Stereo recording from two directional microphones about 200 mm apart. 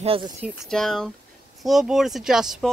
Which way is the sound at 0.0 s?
30° right (ahead or behind).